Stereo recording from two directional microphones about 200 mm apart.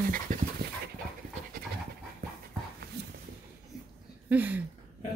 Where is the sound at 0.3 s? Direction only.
45° right (ahead or behind).